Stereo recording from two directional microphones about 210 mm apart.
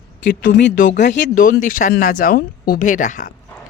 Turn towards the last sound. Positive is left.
turn(degrees=35)  # may be behind; listen again after turning